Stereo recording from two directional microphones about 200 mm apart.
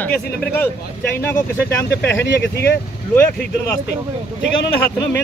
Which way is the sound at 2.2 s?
55° left (ahead or behind).